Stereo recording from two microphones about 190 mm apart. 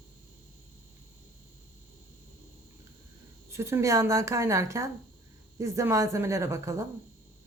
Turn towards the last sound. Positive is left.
turn(degrees=-15)  # may be behind; listen again after turning